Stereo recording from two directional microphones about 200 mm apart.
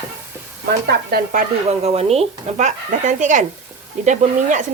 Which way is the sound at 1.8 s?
30° right (ahead or behind).